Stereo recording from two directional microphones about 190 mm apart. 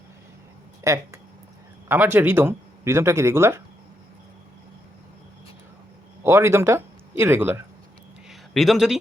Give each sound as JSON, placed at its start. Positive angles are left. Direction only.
{"t": 0.9, "sound": "speech", "side_deg": -15}
{"t": 6.2, "sound": "speech", "side_deg": -15}
{"t": 8.3, "sound": "a sound", "side_deg": 0}